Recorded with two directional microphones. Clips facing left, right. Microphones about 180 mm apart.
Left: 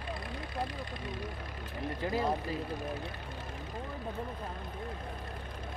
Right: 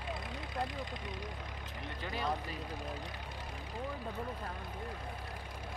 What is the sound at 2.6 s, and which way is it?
Speech, 15° right (ahead or behind).